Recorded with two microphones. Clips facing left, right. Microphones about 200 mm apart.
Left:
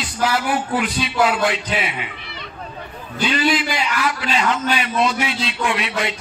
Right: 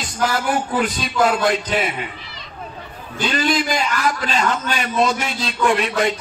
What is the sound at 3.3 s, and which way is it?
A man's voice, 45° right (ahead or behind).